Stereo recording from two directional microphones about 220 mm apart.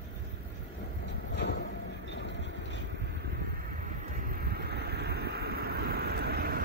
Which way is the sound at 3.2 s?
45° right (ahead or behind).